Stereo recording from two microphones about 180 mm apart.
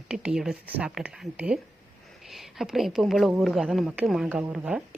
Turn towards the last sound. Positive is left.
turn(degrees=-5)  # may be behind; listen again after turning